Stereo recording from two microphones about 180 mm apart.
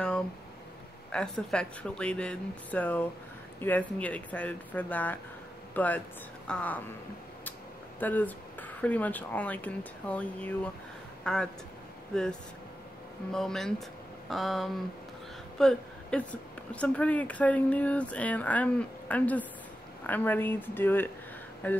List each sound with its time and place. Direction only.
1.1 s a woman's voice: 5° left (ahead or behind)
8.0 s a woman's voice: 10° left (ahead or behind)